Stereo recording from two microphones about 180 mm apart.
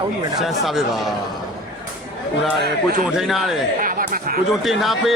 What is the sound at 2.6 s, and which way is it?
Speech, 60° right (ahead or behind).